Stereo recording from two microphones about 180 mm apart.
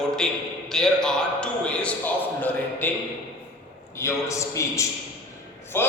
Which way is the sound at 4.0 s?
15° left (ahead or behind).